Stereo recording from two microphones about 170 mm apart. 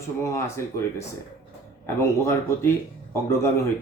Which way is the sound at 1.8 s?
15° left (ahead or behind).